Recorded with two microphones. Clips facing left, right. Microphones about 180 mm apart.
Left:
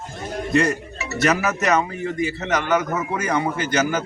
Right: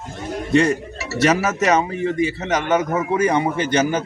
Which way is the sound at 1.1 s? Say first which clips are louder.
Right 2 dB; 30° right (ahead or behind).